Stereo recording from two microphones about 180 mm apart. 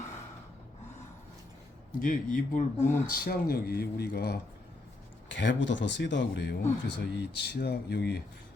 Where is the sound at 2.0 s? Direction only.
50° left (ahead or behind).